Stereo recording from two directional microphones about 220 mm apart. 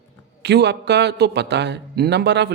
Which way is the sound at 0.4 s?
50° right (ahead or behind).